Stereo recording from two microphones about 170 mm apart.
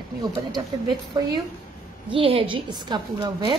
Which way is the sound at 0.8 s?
25° right (ahead or behind).